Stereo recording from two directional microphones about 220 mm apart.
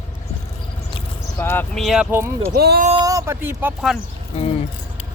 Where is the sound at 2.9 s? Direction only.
15° right (ahead or behind).